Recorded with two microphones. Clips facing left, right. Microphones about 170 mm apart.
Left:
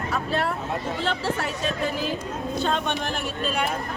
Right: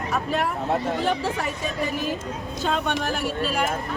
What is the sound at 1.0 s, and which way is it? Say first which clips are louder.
Speech: right 2 dB; 15° right (ahead or behind).